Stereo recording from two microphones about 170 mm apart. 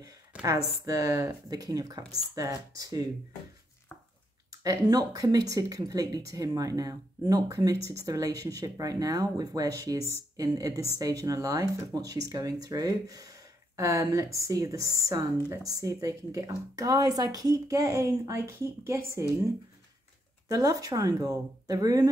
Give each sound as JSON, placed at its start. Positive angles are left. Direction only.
{"t": 0.8, "sound": "speech", "side_deg": -20}
{"t": 4.5, "sound": "speech", "side_deg": -20}
{"t": 20.4, "sound": "speech", "side_deg": -20}